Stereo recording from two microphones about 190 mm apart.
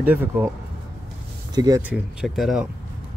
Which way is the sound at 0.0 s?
10° right (ahead or behind).